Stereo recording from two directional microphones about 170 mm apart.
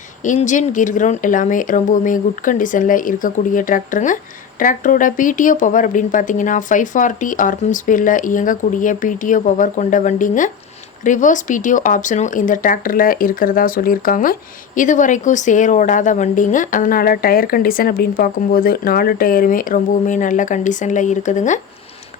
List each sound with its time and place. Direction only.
0.3 s a woman's voice: 45° left (ahead or behind)